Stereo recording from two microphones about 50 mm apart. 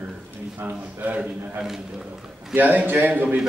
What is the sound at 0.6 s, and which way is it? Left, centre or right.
Speech, right.